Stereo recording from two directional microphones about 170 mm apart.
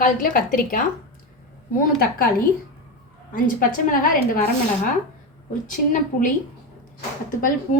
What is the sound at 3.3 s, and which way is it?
A woman's voice, 55° left (ahead or behind).